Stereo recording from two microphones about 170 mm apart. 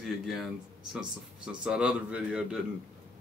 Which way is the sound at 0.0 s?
Centre (ahead or behind).